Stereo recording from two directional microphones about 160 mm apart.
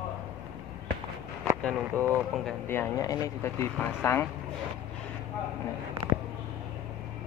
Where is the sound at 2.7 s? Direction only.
20° left (ahead or behind).